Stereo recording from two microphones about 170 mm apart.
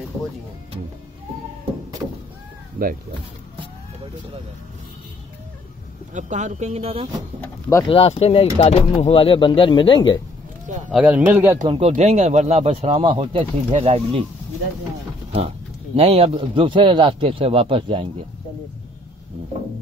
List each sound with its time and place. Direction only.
2.8 s speech: 60° right (ahead or behind)
6.1 s speech: 45° right (ahead or behind)
7.9 s speech: 35° left (ahead or behind)
10.9 s a man's voice: 5° right (ahead or behind)
11.6 s a man's voice: 30° right (ahead or behind)
11.9 s speech: 45° right (ahead or behind)
16.0 s a man's voice: 35° right (ahead or behind)